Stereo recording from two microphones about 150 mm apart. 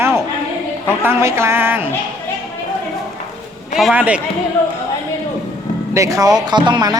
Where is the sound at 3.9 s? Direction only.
10° right (ahead or behind).